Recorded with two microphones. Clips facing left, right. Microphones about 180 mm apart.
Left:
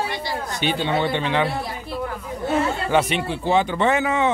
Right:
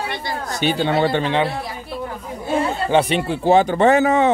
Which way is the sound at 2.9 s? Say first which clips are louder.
Right 3 dB; 35° right (ahead or behind).